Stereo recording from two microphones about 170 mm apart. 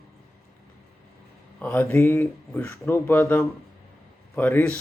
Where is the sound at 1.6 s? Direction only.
10° left (ahead or behind).